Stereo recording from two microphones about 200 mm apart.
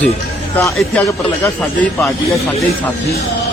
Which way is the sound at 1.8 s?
15° left (ahead or behind).